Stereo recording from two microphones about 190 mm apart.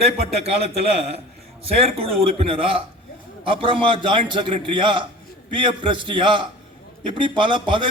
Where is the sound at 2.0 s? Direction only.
30° right (ahead or behind).